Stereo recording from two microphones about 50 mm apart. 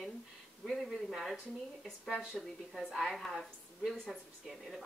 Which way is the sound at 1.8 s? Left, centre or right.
Centre.